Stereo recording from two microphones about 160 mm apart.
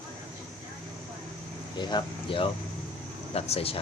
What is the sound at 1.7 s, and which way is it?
Speech, 30° left (ahead or behind).